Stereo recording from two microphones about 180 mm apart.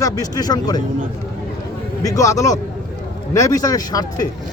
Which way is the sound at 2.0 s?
20° left (ahead or behind).